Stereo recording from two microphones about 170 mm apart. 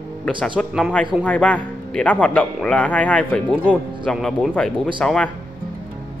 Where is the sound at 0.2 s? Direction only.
5° left (ahead or behind).